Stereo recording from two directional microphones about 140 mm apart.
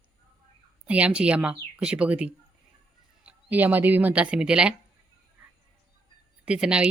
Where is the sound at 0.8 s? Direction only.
10° right (ahead or behind).